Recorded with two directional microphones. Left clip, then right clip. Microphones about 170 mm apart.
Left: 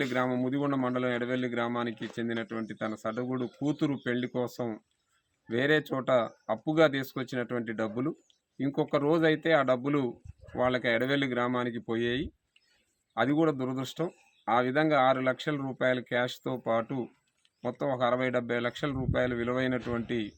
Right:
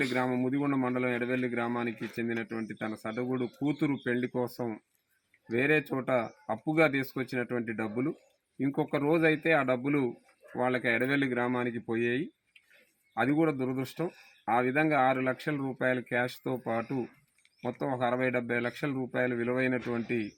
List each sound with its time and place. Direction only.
0.1 s a man's voice: 15° left (ahead or behind)
4.5 s a man's voice: 10° left (ahead or behind)
13.6 s a man's voice: 15° left (ahead or behind)